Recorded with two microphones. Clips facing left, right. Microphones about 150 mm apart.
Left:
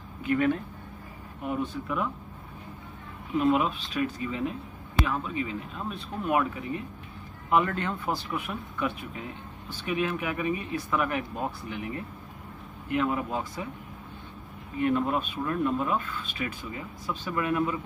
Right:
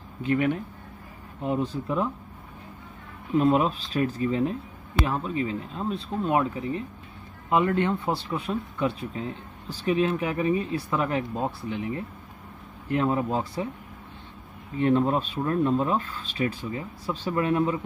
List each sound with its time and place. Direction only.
0.2 s speech: 25° right (ahead or behind)
3.3 s speech: 35° right (ahead or behind)
14.8 s speech: 30° right (ahead or behind)